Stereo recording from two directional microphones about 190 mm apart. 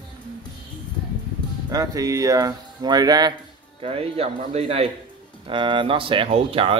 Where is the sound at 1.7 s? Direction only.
20° right (ahead or behind).